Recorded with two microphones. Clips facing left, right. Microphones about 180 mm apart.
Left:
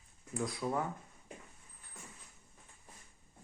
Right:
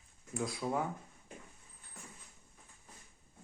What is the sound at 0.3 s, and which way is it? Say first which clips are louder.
Speech: even; 5° right (ahead or behind).